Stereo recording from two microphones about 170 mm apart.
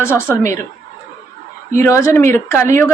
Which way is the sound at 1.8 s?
15° left (ahead or behind).